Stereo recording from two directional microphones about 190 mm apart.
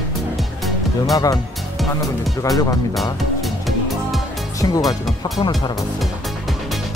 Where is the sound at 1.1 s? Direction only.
20° left (ahead or behind).